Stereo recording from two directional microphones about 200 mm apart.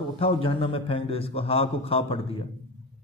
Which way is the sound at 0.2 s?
25° left (ahead or behind).